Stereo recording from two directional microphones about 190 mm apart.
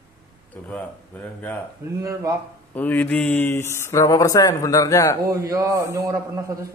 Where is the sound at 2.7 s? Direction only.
10° left (ahead or behind).